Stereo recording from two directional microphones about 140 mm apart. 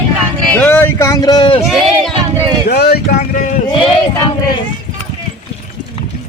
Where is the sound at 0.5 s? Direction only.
15° left (ahead or behind); by 1.5 s 30° left (ahead or behind).